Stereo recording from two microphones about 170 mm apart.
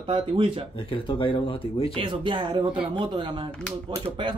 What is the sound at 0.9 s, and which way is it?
Speech, 30° left (ahead or behind).